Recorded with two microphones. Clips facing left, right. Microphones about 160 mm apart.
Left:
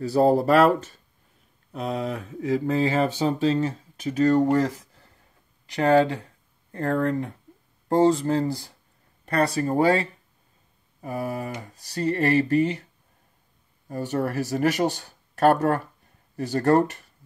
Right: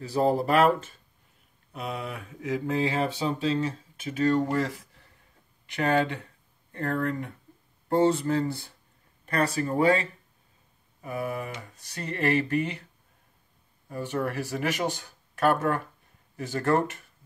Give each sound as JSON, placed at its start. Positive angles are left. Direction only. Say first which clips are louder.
{"t": 0.0, "sound": "speech", "louder": "left 5 dB", "side_deg": 35}
{"t": 13.8, "sound": "speech", "louder": "left 3 dB", "side_deg": 40}